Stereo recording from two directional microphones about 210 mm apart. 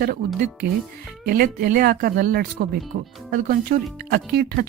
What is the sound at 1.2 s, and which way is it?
Speech, 45° right (ahead or behind).